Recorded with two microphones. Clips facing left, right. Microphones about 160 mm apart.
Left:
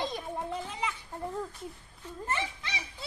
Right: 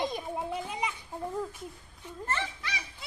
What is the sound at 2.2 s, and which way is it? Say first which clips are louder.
Speech: even; 15° left (ahead or behind).